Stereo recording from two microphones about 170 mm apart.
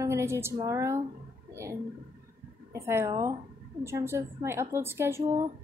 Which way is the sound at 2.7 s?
15° right (ahead or behind).